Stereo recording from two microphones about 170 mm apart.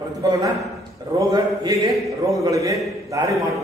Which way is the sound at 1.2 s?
25° right (ahead or behind).